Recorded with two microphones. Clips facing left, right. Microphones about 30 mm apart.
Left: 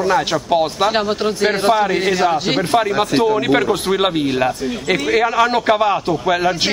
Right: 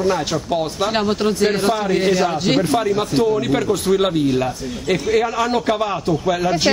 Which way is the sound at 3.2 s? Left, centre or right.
Left.